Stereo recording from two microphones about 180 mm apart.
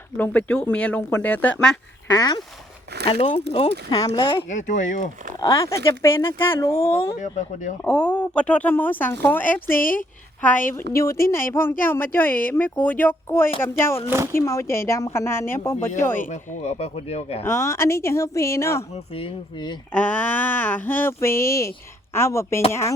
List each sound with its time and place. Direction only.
0.2 s speech: 10° left (ahead or behind)
2.0 s speech: 20° left (ahead or behind)
4.4 s speech: 45° left (ahead or behind)
5.4 s speech: 15° left (ahead or behind)
7.2 s speech: 45° left (ahead or behind)
7.9 s speech: 5° left (ahead or behind)
10.9 s speech: 15° left (ahead or behind)
16.3 s speech: 35° left (ahead or behind)
17.4 s speech: 15° left (ahead or behind)
19.1 s speech: 30° left (ahead or behind)
19.9 s speech: 10° left (ahead or behind)